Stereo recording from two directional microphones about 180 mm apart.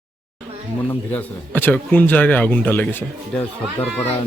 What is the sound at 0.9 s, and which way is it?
Speech, 10° left (ahead or behind).